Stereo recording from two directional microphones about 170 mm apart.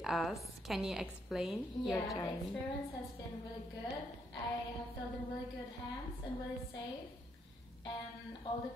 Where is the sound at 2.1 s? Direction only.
20° left (ahead or behind).